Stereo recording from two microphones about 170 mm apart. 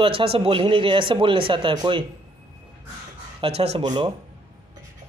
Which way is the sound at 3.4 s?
35° right (ahead or behind).